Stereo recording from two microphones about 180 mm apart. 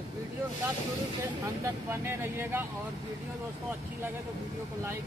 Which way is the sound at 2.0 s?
15° right (ahead or behind).